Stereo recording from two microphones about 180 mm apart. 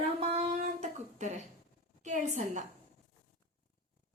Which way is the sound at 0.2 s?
35° right (ahead or behind).